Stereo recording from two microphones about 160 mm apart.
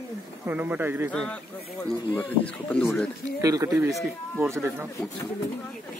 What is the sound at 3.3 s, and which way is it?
Speech, 20° right (ahead or behind).